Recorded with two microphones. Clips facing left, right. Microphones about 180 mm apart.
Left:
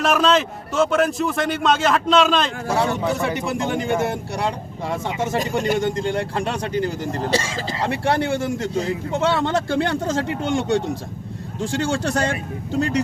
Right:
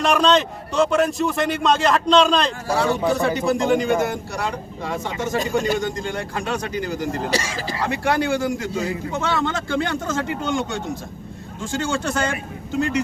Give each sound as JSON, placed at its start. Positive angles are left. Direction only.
{"t": 0.0, "sound": "speech", "side_deg": 0}
{"t": 2.6, "sound": "speech", "side_deg": 25}